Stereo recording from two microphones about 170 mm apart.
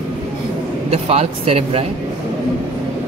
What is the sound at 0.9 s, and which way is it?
Speech, 35° right (ahead or behind).